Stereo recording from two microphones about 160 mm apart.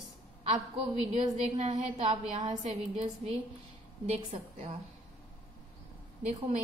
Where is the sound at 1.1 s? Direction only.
40° right (ahead or behind).